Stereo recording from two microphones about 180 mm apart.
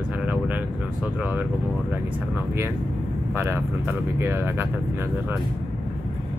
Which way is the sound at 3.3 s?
10° right (ahead or behind).